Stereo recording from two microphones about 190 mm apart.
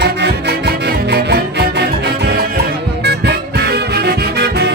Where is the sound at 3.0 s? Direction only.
60° right (ahead or behind).